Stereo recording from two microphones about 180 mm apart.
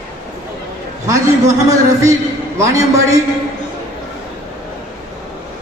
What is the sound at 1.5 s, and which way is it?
Speech, 15° right (ahead or behind).